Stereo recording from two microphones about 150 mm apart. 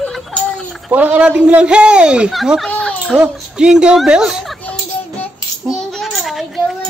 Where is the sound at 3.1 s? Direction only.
5° right (ahead or behind).